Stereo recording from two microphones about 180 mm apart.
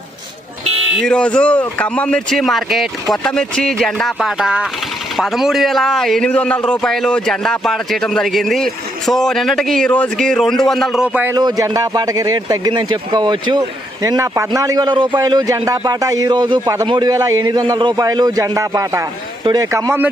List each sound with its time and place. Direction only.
0.9 s a man's voice: 5° left (ahead or behind)
11.3 s a man's voice: 20° right (ahead or behind)